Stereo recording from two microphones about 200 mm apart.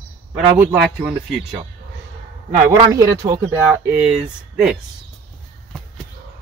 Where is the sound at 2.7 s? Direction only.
20° right (ahead or behind).